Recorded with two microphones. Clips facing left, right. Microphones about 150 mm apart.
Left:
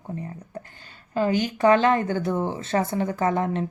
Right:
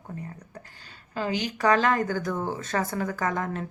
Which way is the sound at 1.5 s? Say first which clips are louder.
Left 4 dB; 30° left (ahead or behind).